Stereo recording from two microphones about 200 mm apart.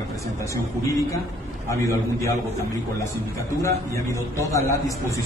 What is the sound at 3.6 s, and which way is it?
A man's voice, 15° left (ahead or behind).